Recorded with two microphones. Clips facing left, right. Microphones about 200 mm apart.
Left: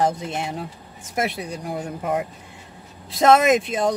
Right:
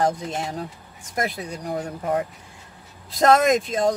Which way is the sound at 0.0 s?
5° left (ahead or behind).